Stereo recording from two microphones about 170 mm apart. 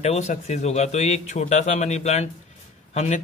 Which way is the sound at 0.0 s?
40° left (ahead or behind).